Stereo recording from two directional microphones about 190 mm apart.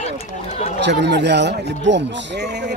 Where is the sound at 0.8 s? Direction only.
65° right (ahead or behind).